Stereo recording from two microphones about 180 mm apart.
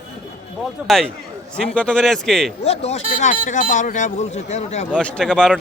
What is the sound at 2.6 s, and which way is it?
Speech, 35° left (ahead or behind).